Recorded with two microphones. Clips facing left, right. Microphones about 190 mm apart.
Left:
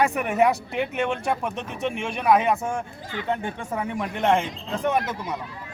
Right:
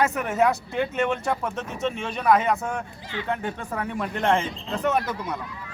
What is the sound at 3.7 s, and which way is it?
Speech, 10° left (ahead or behind).